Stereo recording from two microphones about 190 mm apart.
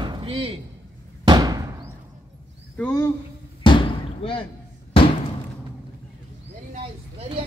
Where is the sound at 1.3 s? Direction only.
20° right (ahead or behind).